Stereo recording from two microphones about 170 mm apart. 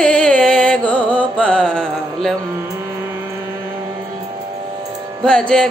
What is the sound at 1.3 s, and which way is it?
Mantra, 5° left (ahead or behind).